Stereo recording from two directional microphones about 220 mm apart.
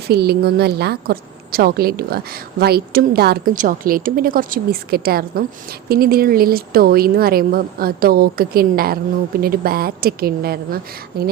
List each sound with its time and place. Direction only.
0.1 s a woman's voice: 45° right (ahead or behind)